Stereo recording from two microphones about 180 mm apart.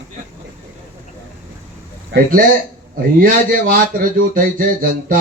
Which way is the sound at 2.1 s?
50° right (ahead or behind).